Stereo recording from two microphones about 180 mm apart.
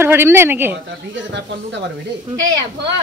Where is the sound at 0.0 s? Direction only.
15° right (ahead or behind).